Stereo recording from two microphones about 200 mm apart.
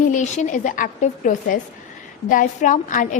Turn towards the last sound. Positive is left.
turn(degrees=40)  # may be behind; listen again after turning